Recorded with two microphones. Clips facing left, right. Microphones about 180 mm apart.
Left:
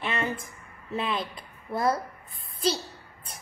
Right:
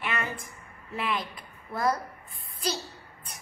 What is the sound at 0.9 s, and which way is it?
A woman's voice, 25° left (ahead or behind).